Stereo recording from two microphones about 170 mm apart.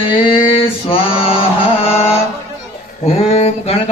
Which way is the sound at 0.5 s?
35° left (ahead or behind).